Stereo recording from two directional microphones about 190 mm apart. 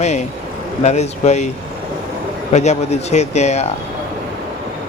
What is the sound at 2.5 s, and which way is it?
Speech, 35° left (ahead or behind).